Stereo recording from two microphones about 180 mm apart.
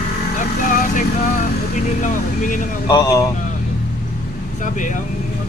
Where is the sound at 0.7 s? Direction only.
45° left (ahead or behind).